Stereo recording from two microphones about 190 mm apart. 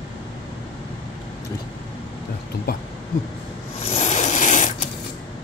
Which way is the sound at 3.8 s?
35° left (ahead or behind).